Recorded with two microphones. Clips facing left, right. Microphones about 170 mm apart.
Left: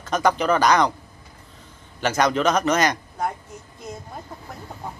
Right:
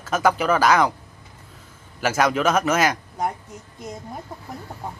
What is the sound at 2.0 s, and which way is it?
Speech, 5° right (ahead or behind).